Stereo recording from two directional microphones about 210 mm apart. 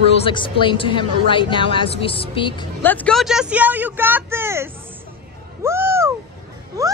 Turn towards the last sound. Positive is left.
turn(degrees=-15)  # may be behind; listen again after turning